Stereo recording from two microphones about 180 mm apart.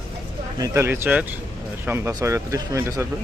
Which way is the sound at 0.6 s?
15° right (ahead or behind).